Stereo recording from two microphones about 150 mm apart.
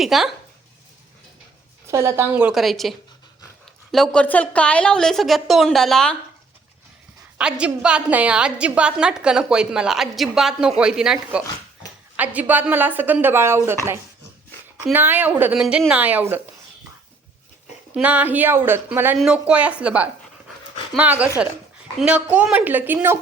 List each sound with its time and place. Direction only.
0.0 s a woman's voice: centre (ahead or behind)
1.9 s a woman's voice: 20° right (ahead or behind)
2.5 s a woman's voice: centre (ahead or behind)
3.9 s a woman's voice: 5° left (ahead or behind)
7.6 s a woman's voice: 5° right (ahead or behind)
17.9 s a woman's voice: 10° right (ahead or behind)